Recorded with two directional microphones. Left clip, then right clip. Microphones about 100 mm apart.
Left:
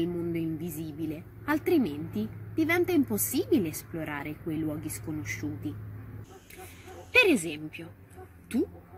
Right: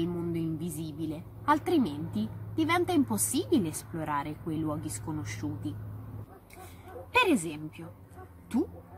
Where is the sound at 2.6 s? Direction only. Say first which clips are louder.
Left 1 dB; 30° right (ahead or behind).